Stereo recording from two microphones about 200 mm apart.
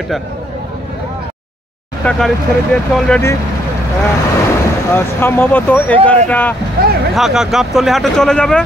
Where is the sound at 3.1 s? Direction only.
10° left (ahead or behind).